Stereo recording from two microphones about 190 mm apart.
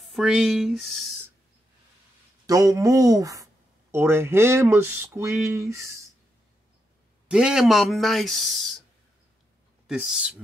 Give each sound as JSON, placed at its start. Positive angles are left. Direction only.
{"t": 0.0, "sound": "speech", "side_deg": 0}
{"t": 2.4, "sound": "speech", "side_deg": -20}
{"t": 7.2, "sound": "speech", "side_deg": -5}
{"t": 9.8, "sound": "speech", "side_deg": -5}